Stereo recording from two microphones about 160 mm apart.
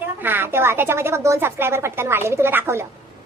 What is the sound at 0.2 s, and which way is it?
A woman's voice, 15° right (ahead or behind).